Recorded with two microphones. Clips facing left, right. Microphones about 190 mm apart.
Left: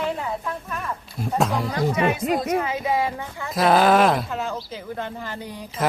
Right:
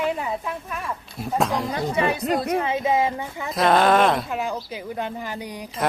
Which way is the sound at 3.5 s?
Centre (ahead or behind).